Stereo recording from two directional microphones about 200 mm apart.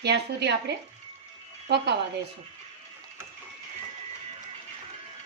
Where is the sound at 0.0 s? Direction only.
55° right (ahead or behind).